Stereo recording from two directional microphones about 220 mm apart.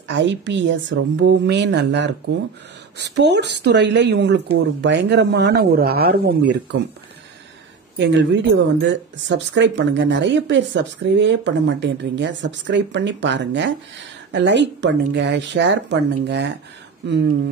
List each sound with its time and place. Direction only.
0.1 s speech: 55° right (ahead or behind)
8.0 s speech: 55° right (ahead or behind)